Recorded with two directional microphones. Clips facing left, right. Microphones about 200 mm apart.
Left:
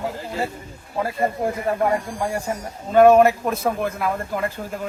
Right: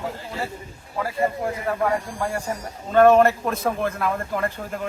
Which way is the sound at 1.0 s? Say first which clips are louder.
Left 2 dB; 25° left (ahead or behind).